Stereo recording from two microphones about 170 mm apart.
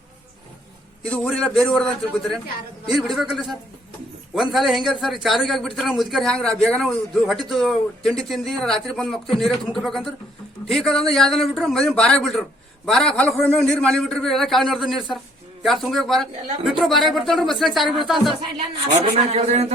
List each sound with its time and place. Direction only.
1.0 s a man's voice: 5° left (ahead or behind)
19.1 s speech: 40° right (ahead or behind)